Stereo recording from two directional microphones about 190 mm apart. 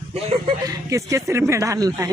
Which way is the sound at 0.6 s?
15° right (ahead or behind).